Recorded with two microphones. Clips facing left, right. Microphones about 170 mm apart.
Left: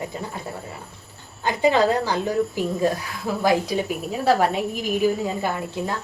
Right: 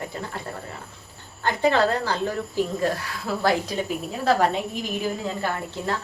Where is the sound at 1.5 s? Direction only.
15° left (ahead or behind).